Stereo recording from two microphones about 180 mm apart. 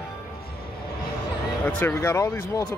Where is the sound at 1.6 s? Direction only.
10° left (ahead or behind).